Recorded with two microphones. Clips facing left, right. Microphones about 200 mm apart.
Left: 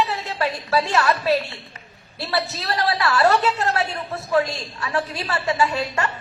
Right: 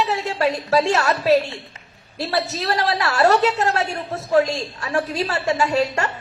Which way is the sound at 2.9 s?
40° right (ahead or behind).